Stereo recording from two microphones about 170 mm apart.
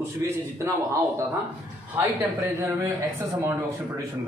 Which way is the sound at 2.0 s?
15° right (ahead or behind).